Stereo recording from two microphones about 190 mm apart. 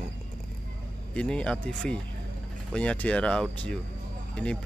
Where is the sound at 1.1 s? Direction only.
5° left (ahead or behind).